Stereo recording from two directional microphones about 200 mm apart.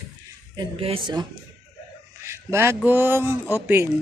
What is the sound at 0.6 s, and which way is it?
Speech, 25° right (ahead or behind).